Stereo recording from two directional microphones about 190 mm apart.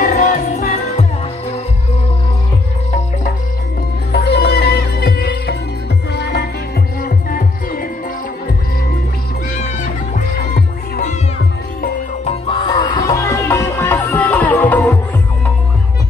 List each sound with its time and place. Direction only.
0.0 s music: 40° left (ahead or behind)
4.1 s music: 60° left (ahead or behind)
7.0 s music: 50° left (ahead or behind)
10.5 s music: 40° left (ahead or behind)
12.3 s music: 30° left (ahead or behind); by 15.0 s 10° left (ahead or behind)